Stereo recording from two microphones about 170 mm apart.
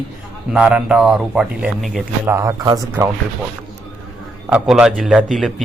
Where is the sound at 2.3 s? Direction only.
15° right (ahead or behind).